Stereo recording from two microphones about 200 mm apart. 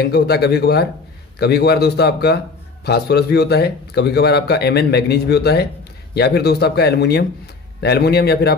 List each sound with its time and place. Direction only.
0.0 s a man's voice: 55° left (ahead or behind)